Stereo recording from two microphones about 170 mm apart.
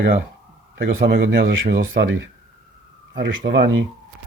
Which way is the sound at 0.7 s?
90° right.